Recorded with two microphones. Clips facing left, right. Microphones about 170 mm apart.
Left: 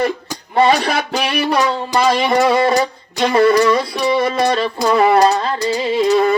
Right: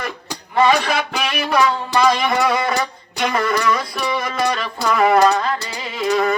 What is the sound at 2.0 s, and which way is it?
Music, 30° left (ahead or behind).